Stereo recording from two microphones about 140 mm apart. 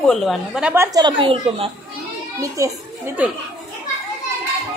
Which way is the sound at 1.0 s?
40° right (ahead or behind).